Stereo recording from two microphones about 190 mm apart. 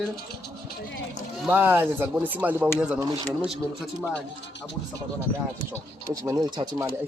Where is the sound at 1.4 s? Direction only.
10° right (ahead or behind).